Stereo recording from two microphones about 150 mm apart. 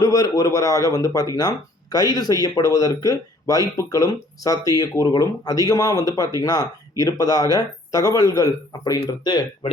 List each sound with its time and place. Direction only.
0.0 s speech: 25° left (ahead or behind)